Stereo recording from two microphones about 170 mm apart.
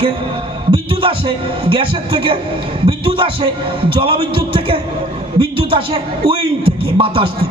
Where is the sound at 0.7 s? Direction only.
30° right (ahead or behind).